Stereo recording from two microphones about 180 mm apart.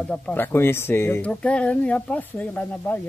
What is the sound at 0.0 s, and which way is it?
Speech, 5° left (ahead or behind).